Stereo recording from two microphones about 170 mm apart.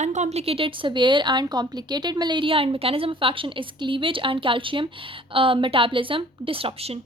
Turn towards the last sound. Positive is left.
turn(degrees=-35)  # may be behind; listen again after turning